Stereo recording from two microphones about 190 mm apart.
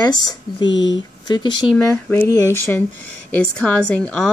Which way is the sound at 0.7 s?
75° left (ahead or behind).